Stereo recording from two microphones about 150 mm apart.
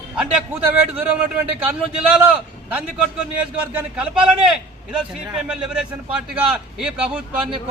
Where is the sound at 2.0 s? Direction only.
10° right (ahead or behind).